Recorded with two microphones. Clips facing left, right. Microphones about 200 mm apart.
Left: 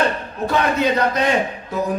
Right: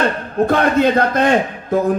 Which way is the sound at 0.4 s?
50° right (ahead or behind).